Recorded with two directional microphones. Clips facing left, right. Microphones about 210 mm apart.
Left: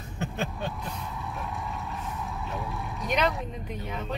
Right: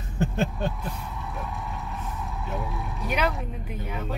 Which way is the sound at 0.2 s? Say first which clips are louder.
Right 6 dB; 50° right (ahead or behind).